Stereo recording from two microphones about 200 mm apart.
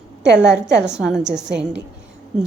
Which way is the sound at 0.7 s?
5° right (ahead or behind).